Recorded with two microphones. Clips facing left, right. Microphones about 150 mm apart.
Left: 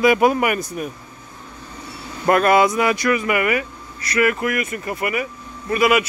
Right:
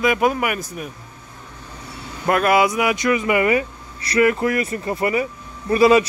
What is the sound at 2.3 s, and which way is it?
A man's voice, 5° right (ahead or behind).